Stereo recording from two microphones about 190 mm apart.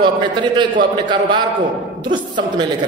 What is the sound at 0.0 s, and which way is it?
A man's voice, 25° right (ahead or behind).